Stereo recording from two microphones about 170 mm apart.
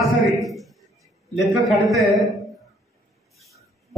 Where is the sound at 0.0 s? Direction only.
Centre (ahead or behind).